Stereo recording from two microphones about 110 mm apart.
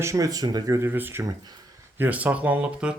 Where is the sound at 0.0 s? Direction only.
30° right (ahead or behind).